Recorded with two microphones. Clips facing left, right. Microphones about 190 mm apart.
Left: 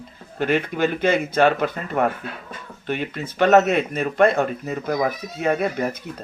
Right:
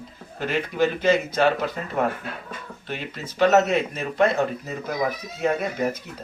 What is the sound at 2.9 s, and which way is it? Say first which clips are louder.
Speech: left 7 dB; 60° left (ahead or behind).